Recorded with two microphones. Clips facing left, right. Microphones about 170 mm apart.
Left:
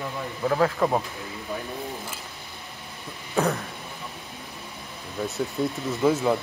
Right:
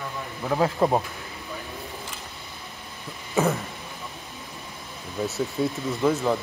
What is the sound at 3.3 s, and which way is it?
Throat clearing, 5° right (ahead or behind).